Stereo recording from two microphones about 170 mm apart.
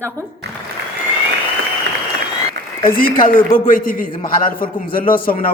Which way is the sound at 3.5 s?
55° left (ahead or behind).